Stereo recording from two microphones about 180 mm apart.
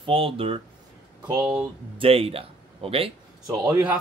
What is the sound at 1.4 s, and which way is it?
Speech, 10° right (ahead or behind).